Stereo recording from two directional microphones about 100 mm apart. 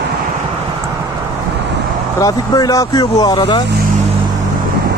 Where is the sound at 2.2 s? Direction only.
35° left (ahead or behind).